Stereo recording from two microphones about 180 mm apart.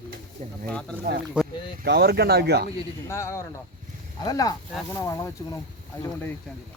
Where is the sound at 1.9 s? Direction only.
60° right (ahead or behind).